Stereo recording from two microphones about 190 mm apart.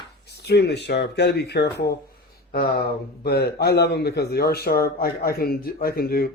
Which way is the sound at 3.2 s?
55° left (ahead or behind).